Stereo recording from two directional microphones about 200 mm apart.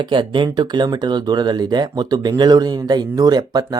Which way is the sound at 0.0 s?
25° right (ahead or behind).